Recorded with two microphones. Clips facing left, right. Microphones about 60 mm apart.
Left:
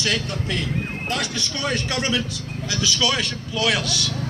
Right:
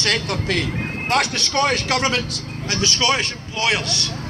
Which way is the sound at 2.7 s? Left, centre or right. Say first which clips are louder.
Right 3 dB; right.